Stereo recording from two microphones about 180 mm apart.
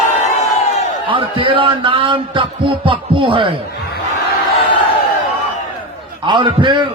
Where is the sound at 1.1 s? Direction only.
30° right (ahead or behind).